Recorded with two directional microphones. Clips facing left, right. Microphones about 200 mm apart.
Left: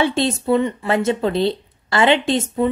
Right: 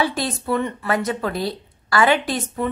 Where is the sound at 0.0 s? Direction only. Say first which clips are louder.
Left 4 dB; 25° left (ahead or behind).